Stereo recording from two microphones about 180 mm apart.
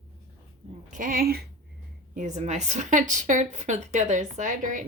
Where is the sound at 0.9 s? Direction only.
45° right (ahead or behind).